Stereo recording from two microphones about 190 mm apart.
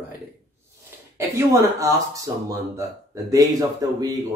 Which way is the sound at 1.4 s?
15° right (ahead or behind).